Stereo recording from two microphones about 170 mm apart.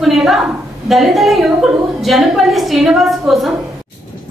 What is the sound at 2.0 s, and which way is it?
A woman's voice, centre (ahead or behind).